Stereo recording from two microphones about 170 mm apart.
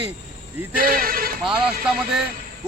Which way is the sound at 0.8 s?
55° right (ahead or behind).